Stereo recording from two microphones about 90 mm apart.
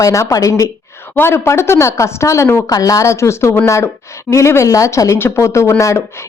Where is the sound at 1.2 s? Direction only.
30° left (ahead or behind).